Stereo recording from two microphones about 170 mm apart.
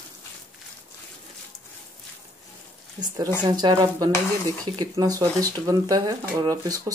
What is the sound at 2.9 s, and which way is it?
Speech, 25° right (ahead or behind).